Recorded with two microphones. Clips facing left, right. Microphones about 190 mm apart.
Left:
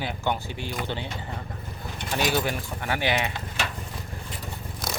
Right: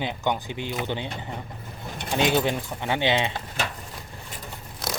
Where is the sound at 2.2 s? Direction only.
20° right (ahead or behind).